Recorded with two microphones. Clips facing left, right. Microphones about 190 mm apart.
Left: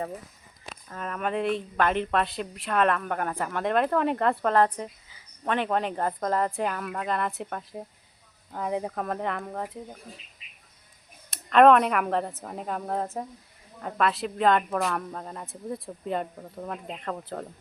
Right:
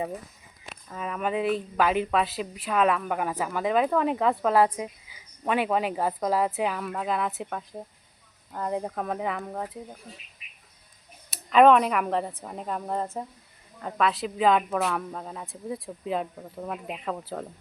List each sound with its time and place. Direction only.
0.9 s a woman's voice: 5° right (ahead or behind)
10.4 s bird: 25° left (ahead or behind)
11.3 s a woman's voice: centre (ahead or behind)